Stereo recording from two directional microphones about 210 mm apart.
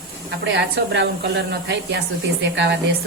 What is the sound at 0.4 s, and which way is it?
A woman's voice, 55° right (ahead or behind).